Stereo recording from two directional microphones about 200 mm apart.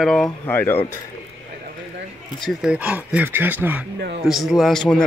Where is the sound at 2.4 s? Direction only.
5° right (ahead or behind).